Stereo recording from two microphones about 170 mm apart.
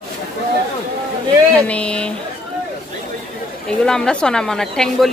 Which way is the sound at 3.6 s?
5° left (ahead or behind).